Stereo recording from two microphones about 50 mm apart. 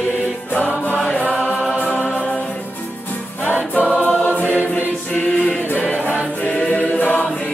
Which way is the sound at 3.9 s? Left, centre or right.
Left.